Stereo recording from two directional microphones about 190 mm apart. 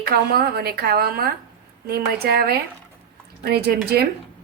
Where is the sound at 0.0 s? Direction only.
55° right (ahead or behind).